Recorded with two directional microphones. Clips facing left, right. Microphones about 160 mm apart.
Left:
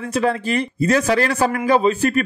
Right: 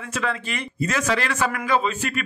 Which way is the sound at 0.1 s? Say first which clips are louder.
Left 8 dB; 35° left (ahead or behind).